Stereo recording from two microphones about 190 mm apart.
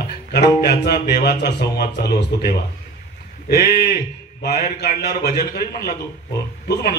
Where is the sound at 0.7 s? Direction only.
60° left (ahead or behind).